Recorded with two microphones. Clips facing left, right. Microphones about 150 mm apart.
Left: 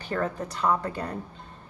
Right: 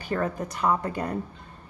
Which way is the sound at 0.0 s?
10° right (ahead or behind).